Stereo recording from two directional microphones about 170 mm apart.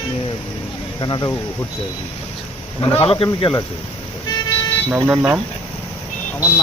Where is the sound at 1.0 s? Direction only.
25° left (ahead or behind).